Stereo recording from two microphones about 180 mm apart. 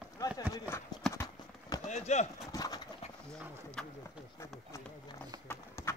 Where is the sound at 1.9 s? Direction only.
40° left (ahead or behind).